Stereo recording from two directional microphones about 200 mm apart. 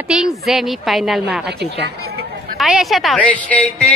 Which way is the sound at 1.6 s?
55° right (ahead or behind).